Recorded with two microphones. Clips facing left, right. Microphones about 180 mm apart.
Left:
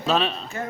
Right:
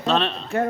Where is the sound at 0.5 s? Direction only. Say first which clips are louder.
Right 9 dB; 60° right (ahead or behind).